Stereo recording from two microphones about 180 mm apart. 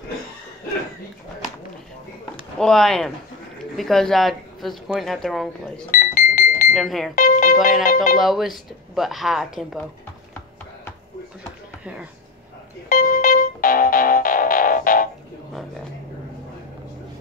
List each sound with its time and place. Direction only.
2.6 s speech: 5° left (ahead or behind)
5.9 s music: 50° left (ahead or behind)
6.7 s speech: centre (ahead or behind)
7.2 s music: 50° left (ahead or behind)
7.8 s speech: 50° left (ahead or behind)
8.2 s speech: centre (ahead or behind)
12.8 s music: 50° left (ahead or behind)